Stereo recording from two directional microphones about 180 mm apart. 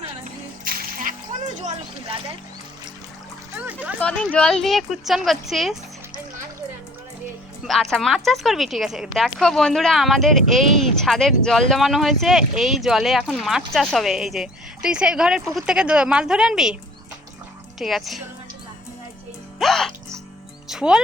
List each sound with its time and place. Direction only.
0.6 s music: 50° right (ahead or behind)
1.5 s speech: 40° right (ahead or behind)
3.5 s speech: 10° right (ahead or behind)
4.0 s speech: 5° left (ahead or behind)
7.6 s speech: centre (ahead or behind)
17.7 s speech: centre (ahead or behind)
19.5 s music: centre (ahead or behind)